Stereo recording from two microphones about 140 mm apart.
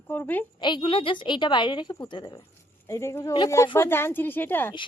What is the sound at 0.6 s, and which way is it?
A woman's voice, 35° left (ahead or behind).